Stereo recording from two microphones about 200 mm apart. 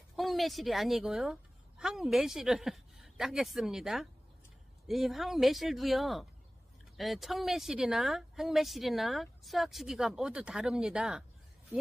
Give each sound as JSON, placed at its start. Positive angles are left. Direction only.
{"t": 0.1, "sound": "a woman's voice", "side_deg": 0}